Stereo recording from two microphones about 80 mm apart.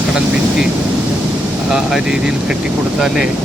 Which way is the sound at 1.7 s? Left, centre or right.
Centre.